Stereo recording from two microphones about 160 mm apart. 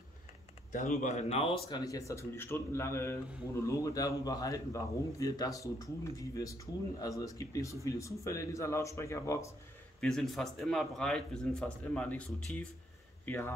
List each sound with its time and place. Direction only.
0.7 s a man's voice: 50° left (ahead or behind); by 9.5 s 20° left (ahead or behind)
9.9 s a man's voice: 5° left (ahead or behind)